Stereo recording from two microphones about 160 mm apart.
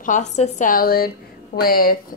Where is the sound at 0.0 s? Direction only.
50° left (ahead or behind).